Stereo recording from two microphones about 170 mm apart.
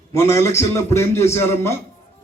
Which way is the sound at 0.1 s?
15° left (ahead or behind).